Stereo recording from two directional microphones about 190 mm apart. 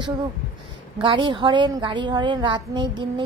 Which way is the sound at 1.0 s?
25° right (ahead or behind).